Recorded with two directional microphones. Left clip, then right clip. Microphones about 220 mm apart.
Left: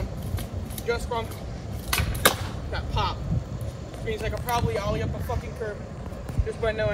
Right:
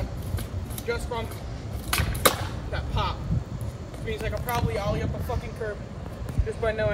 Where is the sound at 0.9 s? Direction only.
Centre (ahead or behind).